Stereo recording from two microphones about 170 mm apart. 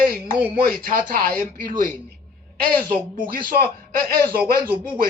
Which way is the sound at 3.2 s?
60° right (ahead or behind).